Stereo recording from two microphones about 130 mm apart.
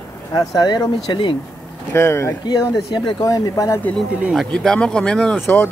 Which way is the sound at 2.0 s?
20° left (ahead or behind).